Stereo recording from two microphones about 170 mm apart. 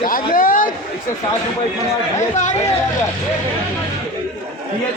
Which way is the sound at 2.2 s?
45° left (ahead or behind).